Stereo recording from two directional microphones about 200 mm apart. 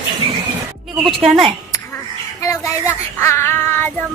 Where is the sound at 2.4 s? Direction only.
15° left (ahead or behind).